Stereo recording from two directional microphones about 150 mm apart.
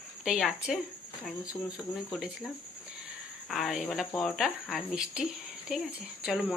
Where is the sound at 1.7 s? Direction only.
Centre (ahead or behind).